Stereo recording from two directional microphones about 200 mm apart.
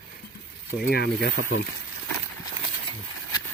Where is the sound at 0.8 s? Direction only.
50° left (ahead or behind).